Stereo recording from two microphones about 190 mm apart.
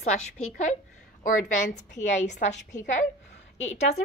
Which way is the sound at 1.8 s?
40° left (ahead or behind).